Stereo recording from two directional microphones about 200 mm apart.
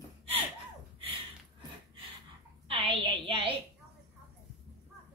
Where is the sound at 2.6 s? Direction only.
25° right (ahead or behind).